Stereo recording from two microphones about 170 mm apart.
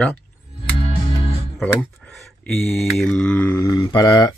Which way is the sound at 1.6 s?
5° left (ahead or behind).